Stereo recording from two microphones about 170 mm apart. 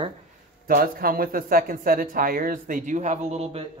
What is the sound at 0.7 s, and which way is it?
Speech, 60° right (ahead or behind).